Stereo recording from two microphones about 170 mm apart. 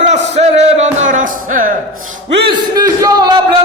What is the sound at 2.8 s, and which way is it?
Speech, 20° right (ahead or behind).